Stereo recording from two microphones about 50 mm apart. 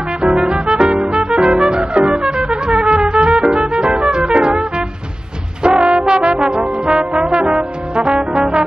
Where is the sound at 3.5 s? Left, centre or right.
Centre.